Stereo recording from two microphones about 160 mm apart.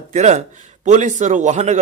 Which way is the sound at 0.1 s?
45° right (ahead or behind).